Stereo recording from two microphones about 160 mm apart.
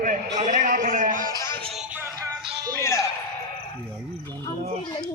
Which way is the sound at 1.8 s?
15° right (ahead or behind).